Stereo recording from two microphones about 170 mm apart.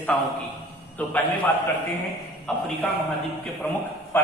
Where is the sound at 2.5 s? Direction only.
5° left (ahead or behind).